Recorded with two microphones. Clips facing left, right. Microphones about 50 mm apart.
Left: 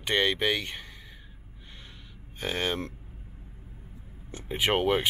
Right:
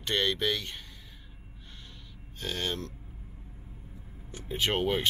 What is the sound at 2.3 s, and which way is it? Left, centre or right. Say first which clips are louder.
Speech: left 4 dB; left.